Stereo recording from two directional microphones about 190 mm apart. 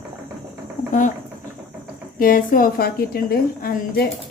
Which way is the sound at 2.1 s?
50° left (ahead or behind).